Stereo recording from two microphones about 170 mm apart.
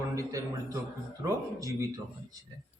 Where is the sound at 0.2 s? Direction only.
20° right (ahead or behind).